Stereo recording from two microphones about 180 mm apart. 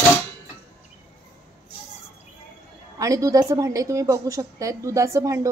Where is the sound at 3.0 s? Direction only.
20° right (ahead or behind).